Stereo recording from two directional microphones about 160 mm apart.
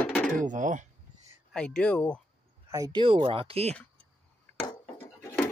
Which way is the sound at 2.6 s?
20° right (ahead or behind).